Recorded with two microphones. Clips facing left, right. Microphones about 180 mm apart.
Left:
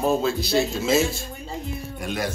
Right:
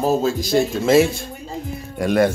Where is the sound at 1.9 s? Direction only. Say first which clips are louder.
Right 12 dB; 70° right (ahead or behind).